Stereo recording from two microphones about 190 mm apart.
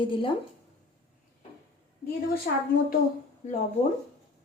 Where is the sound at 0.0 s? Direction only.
25° left (ahead or behind).